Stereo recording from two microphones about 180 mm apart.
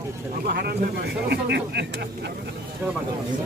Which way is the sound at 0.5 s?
60° right (ahead or behind).